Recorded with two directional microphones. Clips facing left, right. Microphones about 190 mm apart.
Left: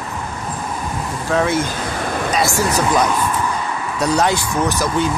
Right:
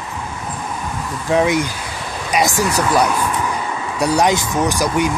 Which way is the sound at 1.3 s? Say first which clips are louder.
Right 2 dB; 15° right (ahead or behind).